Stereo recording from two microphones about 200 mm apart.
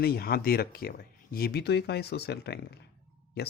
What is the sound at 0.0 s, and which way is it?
Speech, 50° left (ahead or behind).